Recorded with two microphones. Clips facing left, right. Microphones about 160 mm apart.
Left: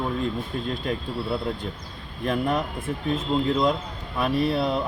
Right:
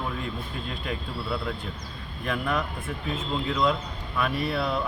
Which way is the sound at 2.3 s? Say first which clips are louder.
Left 4 dB; 30° left (ahead or behind).